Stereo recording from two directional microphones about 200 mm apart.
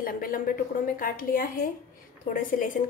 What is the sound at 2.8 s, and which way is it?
Speech, 45° left (ahead or behind).